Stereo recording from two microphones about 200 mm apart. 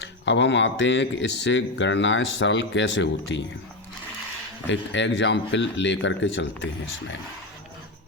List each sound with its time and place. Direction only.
0.0 s speech: 60° left (ahead or behind)
4.6 s speech: 65° left (ahead or behind)